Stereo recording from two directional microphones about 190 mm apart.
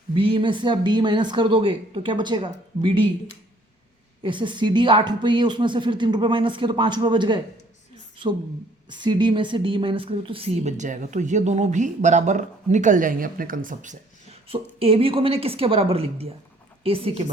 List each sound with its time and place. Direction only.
0.1 s speech: 30° right (ahead or behind)
4.2 s speech: 25° right (ahead or behind)
8.9 s a woman's voice: 25° right (ahead or behind)